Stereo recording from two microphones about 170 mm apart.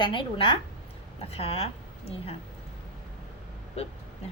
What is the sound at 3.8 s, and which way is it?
Speech, 35° left (ahead or behind).